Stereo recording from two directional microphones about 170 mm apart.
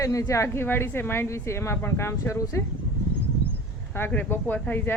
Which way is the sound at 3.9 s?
10° left (ahead or behind).